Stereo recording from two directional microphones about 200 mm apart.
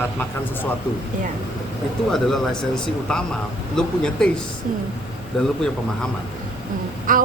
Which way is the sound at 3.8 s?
5° left (ahead or behind).